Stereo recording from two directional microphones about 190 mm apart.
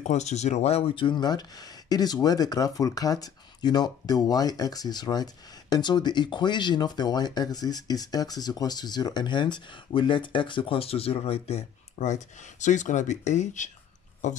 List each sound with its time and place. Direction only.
0.0 s speech: 35° left (ahead or behind)